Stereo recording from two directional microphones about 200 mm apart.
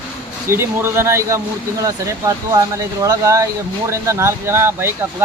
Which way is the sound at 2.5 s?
15° right (ahead or behind).